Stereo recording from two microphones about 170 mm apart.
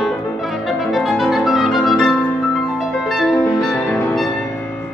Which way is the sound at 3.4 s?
15° left (ahead or behind).